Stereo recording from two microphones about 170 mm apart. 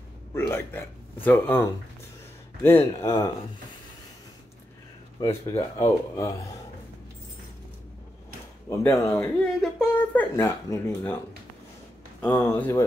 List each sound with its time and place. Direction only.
0.3 s a man's voice: 15° left (ahead or behind)
2.6 s speech: 15° left (ahead or behind)
5.5 s speech: 20° left (ahead or behind)
8.6 s speech: 20° left (ahead or behind)
9.4 s speech: 5° left (ahead or behind)
12.2 s speech: 15° left (ahead or behind)